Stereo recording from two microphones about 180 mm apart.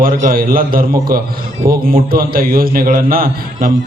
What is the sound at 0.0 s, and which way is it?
A man's voice, 50° right (ahead or behind).